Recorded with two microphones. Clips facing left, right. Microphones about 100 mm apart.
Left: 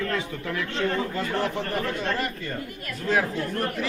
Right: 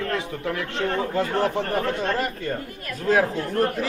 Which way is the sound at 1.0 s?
35° right (ahead or behind).